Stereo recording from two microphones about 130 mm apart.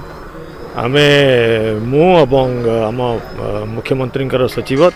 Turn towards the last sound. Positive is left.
turn(degrees=0)  # may be behind; listen again after turning